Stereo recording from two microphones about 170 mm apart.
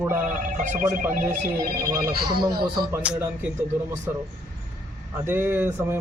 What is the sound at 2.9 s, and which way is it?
Speech, 10° right (ahead or behind).